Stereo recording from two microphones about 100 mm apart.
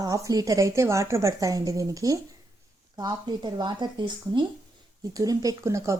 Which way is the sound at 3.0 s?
45° right (ahead or behind).